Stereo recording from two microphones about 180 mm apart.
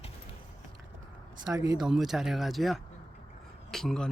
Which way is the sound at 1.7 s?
Centre (ahead or behind).